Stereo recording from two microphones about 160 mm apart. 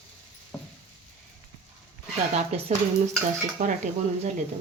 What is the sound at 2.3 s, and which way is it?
Speech, 40° right (ahead or behind).